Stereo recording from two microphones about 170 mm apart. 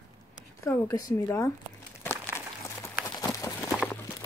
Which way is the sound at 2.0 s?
15° left (ahead or behind).